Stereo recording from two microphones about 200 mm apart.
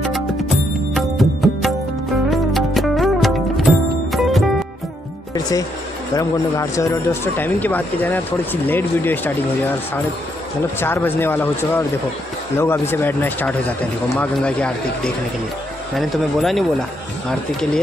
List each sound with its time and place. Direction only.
0.9 s music: centre (ahead or behind)
5.3 s music: 15° left (ahead or behind)
6.1 s speech: 15° left (ahead or behind)
10.8 s speech: 10° left (ahead or behind)